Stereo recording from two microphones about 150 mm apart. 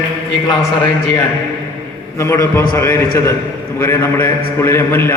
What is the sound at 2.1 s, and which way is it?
A man's voice, 20° left (ahead or behind).